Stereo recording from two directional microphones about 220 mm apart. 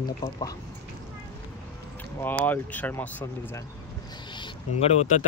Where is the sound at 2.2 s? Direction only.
10° left (ahead or behind).